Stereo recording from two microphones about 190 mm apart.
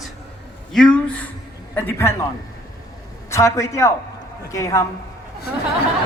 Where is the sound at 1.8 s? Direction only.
15° left (ahead or behind).